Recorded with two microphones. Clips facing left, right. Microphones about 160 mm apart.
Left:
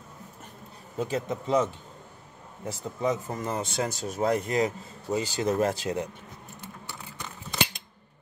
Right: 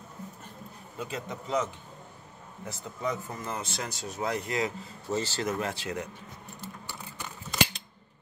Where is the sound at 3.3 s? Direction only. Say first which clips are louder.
Left 6 dB; 35° left (ahead or behind).